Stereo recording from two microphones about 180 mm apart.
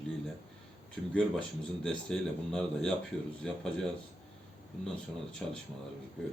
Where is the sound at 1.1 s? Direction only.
5° left (ahead or behind).